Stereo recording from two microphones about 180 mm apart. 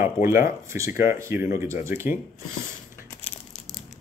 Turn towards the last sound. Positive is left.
turn(degrees=0)  # may be behind; listen again after turning